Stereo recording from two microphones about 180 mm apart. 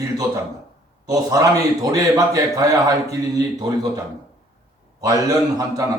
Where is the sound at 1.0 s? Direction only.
20° right (ahead or behind).